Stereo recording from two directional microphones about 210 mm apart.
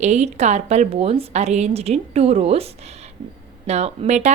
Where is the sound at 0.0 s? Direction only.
35° right (ahead or behind).